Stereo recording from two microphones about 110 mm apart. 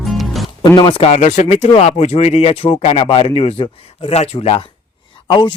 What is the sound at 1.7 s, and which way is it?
Speech, 70° left (ahead or behind).